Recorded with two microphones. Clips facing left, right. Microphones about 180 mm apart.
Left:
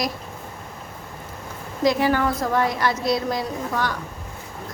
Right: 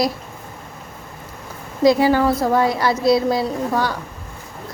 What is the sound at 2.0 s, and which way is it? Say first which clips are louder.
Speech: right 5 dB; 30° right (ahead or behind).